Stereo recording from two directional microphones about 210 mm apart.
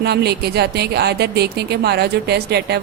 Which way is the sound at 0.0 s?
50° right (ahead or behind).